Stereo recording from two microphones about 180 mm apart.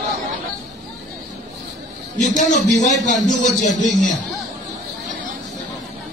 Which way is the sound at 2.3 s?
45° left (ahead or behind).